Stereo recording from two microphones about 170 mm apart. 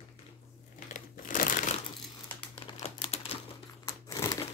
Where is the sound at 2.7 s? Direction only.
35° left (ahead or behind).